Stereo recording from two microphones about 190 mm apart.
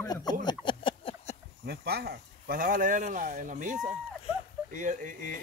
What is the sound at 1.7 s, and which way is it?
Speech, 55° right (ahead or behind).